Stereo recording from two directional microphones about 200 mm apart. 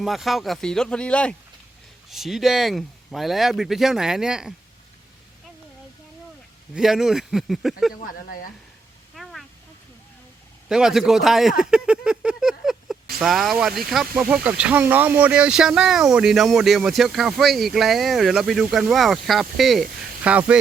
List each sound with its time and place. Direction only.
0.0 s speech: centre (ahead or behind)
6.7 s speech: centre (ahead or behind)
8.0 s speech: 45° left (ahead or behind)
9.1 s a sound: centre (ahead or behind)
10.7 s speech: centre (ahead or behind)